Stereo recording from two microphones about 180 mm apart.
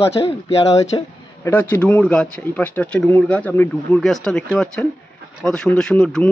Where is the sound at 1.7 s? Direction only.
10° left (ahead or behind).